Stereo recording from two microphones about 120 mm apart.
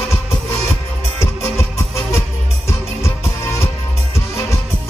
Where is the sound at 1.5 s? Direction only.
20° left (ahead or behind).